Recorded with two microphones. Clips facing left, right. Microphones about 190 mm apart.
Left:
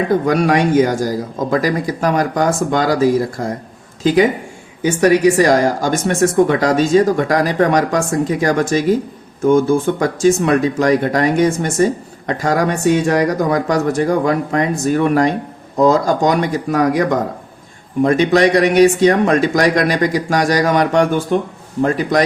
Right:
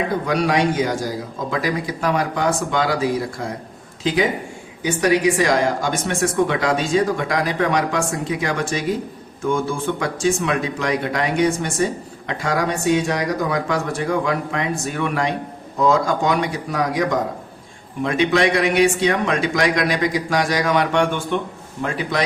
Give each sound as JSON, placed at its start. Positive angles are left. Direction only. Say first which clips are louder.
{"t": 0.3, "sound": "speech", "louder": "left 2 dB", "side_deg": 50}